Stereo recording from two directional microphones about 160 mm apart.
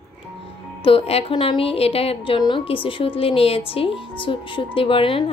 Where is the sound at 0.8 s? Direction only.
35° left (ahead or behind).